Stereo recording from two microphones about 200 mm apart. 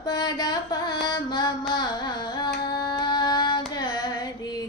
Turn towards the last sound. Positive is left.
turn(degrees=20)  # may be behind; listen again after turning